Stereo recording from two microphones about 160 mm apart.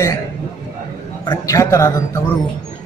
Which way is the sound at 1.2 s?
20° left (ahead or behind).